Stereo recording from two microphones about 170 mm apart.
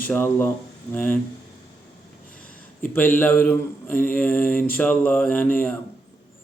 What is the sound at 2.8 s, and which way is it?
Speech, 10° left (ahead or behind).